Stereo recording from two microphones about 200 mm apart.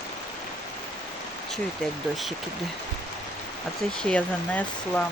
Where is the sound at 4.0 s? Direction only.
5° left (ahead or behind).